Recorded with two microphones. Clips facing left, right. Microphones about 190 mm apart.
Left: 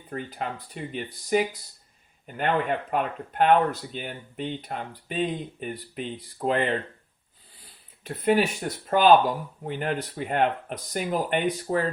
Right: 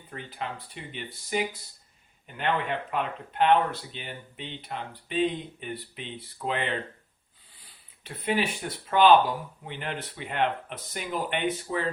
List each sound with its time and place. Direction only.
0.1 s speech: 45° left (ahead or behind)
8.0 s speech: 45° left (ahead or behind)